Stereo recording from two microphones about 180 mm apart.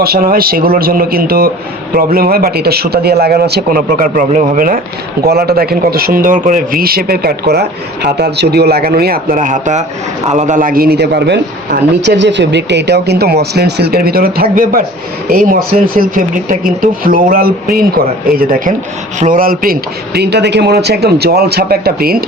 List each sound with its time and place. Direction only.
0.0 s a man's voice: 55° right (ahead or behind)
5.2 s a man's voice: 60° right (ahead or behind)